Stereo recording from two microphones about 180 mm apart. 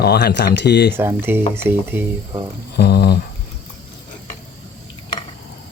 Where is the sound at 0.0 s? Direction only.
65° left (ahead or behind).